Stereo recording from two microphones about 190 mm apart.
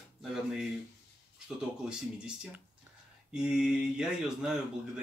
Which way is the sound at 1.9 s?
5° right (ahead or behind).